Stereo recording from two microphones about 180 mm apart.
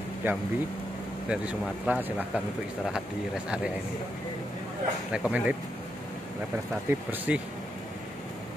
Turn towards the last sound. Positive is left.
turn(degrees=-10)  # may be behind; listen again after turning